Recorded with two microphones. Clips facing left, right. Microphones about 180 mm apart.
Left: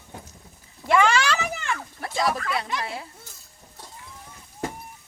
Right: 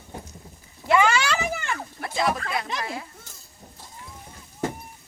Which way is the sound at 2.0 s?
35° left (ahead or behind).